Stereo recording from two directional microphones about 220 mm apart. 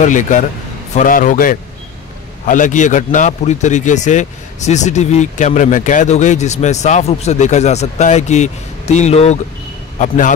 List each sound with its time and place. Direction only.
0.0 s a man's voice: 35° left (ahead or behind)